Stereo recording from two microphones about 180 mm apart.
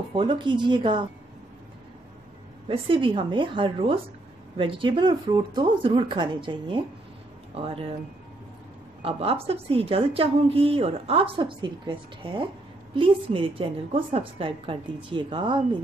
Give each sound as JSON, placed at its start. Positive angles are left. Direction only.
{"t": 0.1, "sound": "speech", "side_deg": -30}
{"t": 2.7, "sound": "a woman's voice", "side_deg": -30}
{"t": 9.0, "sound": "a woman's voice", "side_deg": -35}